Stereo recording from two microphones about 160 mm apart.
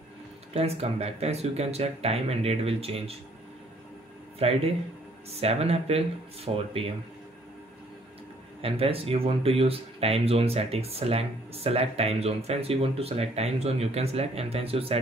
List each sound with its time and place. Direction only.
0.5 s speech: 40° right (ahead or behind)
4.4 s speech: 40° right (ahead or behind)
8.5 s speech: 35° right (ahead or behind)